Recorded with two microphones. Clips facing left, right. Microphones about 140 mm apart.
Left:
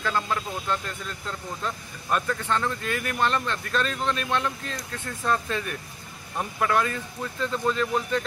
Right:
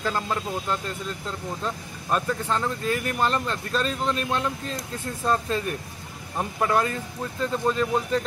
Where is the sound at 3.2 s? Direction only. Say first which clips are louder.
Even; 35° right (ahead or behind).